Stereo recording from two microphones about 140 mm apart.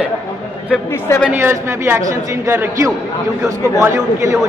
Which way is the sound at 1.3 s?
15° right (ahead or behind).